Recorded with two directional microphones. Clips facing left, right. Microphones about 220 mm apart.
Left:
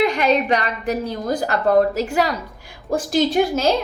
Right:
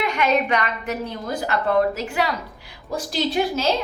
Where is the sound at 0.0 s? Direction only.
35° left (ahead or behind).